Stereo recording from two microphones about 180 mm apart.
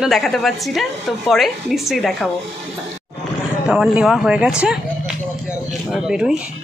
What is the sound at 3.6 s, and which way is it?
A woman's voice, 5° right (ahead or behind).